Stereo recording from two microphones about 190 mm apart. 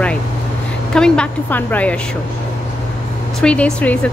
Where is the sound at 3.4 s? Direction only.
5° left (ahead or behind).